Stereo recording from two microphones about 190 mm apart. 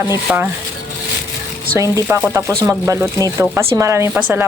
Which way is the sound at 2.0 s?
10° right (ahead or behind).